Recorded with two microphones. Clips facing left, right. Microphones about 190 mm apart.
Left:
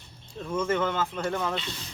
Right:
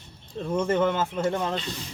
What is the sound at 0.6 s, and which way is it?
Speech, 30° right (ahead or behind).